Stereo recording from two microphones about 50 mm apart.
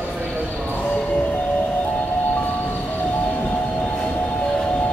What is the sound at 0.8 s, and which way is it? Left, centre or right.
Music, left.